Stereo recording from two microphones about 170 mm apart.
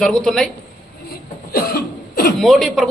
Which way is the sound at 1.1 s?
65° left (ahead or behind).